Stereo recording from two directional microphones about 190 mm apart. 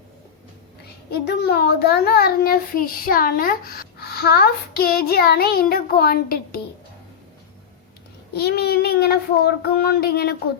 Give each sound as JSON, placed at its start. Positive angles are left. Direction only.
{"t": 1.1, "sound": "a child's voice", "side_deg": 60}
{"t": 8.3, "sound": "child singing", "side_deg": 55}